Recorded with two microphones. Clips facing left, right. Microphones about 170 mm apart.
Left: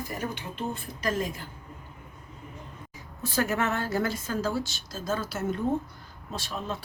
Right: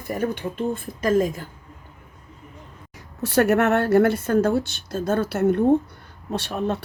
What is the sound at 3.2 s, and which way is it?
A woman's voice, 70° right (ahead or behind).